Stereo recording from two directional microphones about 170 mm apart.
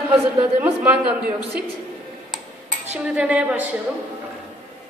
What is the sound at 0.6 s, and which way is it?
Dishes, 10° right (ahead or behind).